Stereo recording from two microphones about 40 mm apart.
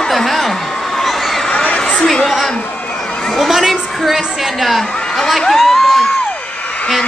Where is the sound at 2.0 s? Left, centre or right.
Centre.